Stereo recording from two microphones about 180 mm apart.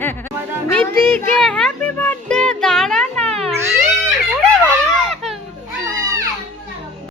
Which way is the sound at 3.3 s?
35° right (ahead or behind).